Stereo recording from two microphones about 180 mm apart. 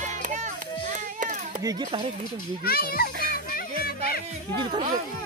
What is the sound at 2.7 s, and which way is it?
Speech, 60° left (ahead or behind).